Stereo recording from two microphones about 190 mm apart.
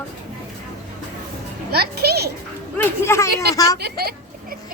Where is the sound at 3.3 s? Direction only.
60° right (ahead or behind).